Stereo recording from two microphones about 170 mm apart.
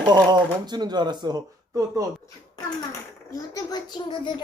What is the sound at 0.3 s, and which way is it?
Speech, 25° right (ahead or behind).